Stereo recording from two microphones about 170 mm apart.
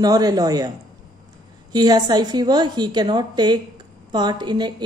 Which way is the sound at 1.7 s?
25° right (ahead or behind).